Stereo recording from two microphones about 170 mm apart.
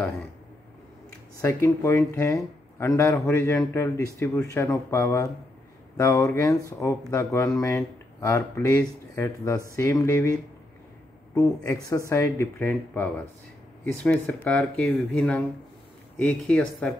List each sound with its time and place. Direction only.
1.4 s speech: 15° left (ahead or behind)
11.3 s speech: 20° left (ahead or behind)